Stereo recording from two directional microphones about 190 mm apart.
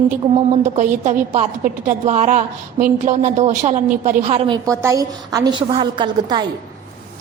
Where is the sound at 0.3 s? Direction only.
40° right (ahead or behind); by 6.4 s 25° right (ahead or behind).